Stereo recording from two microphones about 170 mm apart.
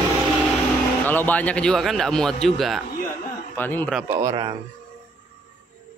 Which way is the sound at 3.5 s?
10° left (ahead or behind).